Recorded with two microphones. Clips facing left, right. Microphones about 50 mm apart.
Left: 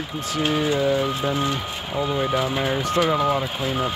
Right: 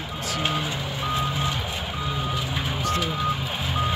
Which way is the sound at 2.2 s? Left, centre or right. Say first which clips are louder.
Left 7 dB; left.